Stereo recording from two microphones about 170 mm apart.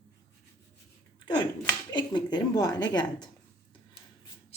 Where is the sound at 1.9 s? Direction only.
25° left (ahead or behind).